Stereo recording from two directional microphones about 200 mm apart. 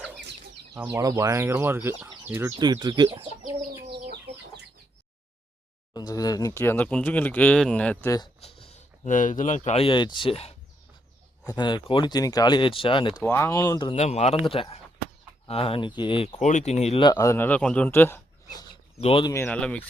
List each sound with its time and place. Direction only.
0.7 s speech: 10° right (ahead or behind)
5.9 s speech: 20° left (ahead or behind)
8.4 s a sound: 30° left (ahead or behind)
9.0 s speech: 40° left (ahead or behind); by 13.2 s 25° left (ahead or behind)
13.2 s speech: 10° left (ahead or behind)
13.9 s speech: 35° left (ahead or behind); by 18.6 s 10° left (ahead or behind)
18.7 s a sound: 30° left (ahead or behind)
19.3 s speech: 10° left (ahead or behind)